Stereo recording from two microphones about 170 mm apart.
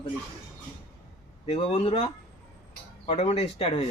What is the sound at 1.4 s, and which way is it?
Speech, 35° left (ahead or behind).